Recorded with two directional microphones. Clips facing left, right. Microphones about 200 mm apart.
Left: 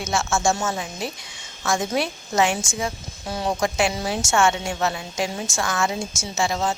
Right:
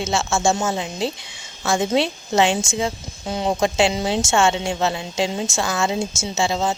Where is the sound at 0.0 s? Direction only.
25° right (ahead or behind).